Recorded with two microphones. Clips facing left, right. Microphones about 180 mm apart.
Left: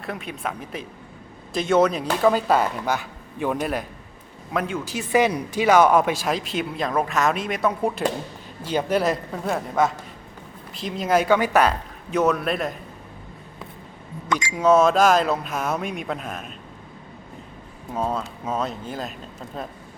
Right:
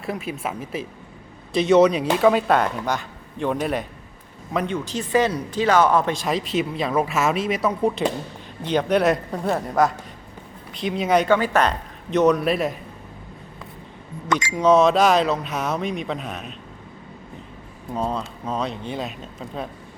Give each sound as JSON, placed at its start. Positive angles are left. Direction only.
{"t": 0.0, "sound": "speech", "side_deg": 0}
{"t": 14.3, "sound": "speech", "side_deg": 5}
{"t": 17.9, "sound": "speech", "side_deg": 5}